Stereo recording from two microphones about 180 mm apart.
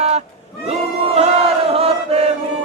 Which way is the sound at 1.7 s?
35° right (ahead or behind).